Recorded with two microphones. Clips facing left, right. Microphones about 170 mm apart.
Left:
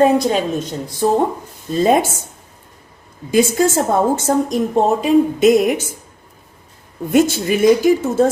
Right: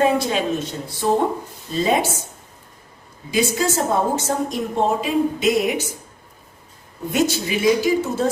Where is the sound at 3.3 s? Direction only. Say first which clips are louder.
Left 6 dB; 50° left (ahead or behind).